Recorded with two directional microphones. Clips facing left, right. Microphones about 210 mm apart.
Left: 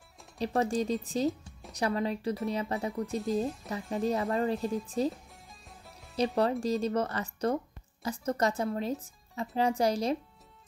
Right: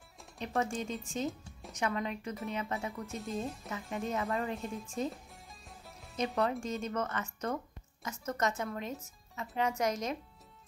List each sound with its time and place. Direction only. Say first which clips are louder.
0.4 s speech: left 6 dB; 35° left (ahead or behind)
5.1 s music: even; centre (ahead or behind)
6.1 s speech: left 5 dB; 35° left (ahead or behind)